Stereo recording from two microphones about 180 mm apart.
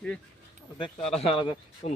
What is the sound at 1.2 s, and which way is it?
Speech, 30° left (ahead or behind).